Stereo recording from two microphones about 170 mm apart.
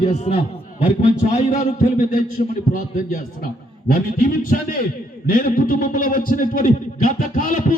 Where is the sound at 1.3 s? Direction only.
45° left (ahead or behind).